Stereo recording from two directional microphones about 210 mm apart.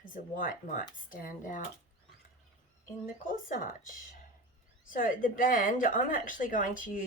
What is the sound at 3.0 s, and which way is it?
A woman's voice, 40° left (ahead or behind).